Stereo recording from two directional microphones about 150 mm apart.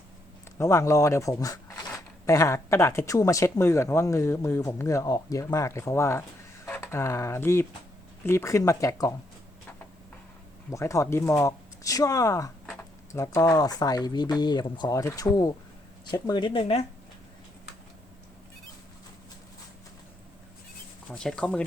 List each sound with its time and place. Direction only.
0.6 s speech: 20° left (ahead or behind)
10.7 s speech: 20° left (ahead or behind); by 16.8 s 35° left (ahead or behind)
21.1 s speech: 5° left (ahead or behind)